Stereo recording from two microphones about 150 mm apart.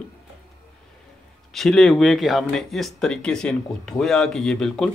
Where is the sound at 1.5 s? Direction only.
Centre (ahead or behind).